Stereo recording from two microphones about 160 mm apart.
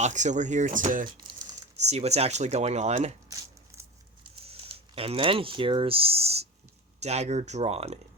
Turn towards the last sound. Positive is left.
turn(degrees=-40)  # may be behind; listen again after turning